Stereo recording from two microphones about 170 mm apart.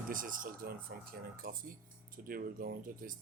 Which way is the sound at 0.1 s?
55° right (ahead or behind).